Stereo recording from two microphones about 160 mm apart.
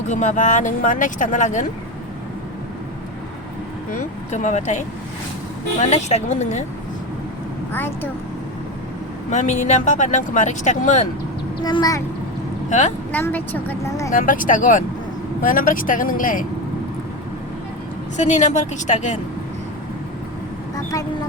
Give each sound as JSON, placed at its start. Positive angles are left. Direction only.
{"t": 0.1, "sound": "speech", "side_deg": 50}
{"t": 4.3, "sound": "speech", "side_deg": 50}
{"t": 7.7, "sound": "a woman's voice", "side_deg": 15}
{"t": 9.3, "sound": "speech", "side_deg": 50}
{"t": 11.6, "sound": "a child's voice", "side_deg": 25}
{"t": 13.1, "sound": "a woman's voice", "side_deg": 10}
{"t": 14.1, "sound": "speech", "side_deg": 55}
{"t": 18.2, "sound": "speech", "side_deg": 45}